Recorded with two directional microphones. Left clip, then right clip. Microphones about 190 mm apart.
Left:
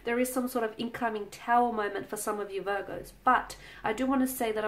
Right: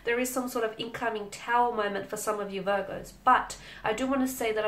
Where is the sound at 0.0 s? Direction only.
40° left (ahead or behind).